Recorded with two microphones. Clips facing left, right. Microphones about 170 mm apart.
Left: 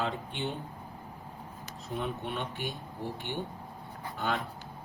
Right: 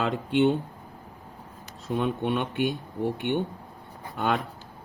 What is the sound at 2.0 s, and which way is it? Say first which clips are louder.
Speech: right 9 dB; 90° right.